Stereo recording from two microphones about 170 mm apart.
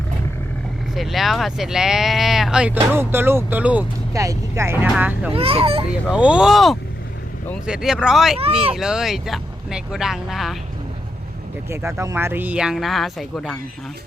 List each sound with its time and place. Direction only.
0.9 s speech: centre (ahead or behind)
5.3 s a child's voice: 35° right (ahead or behind)
5.9 s speech: 5° right (ahead or behind)
11.7 s speech: 15° right (ahead or behind); by 13.6 s centre (ahead or behind)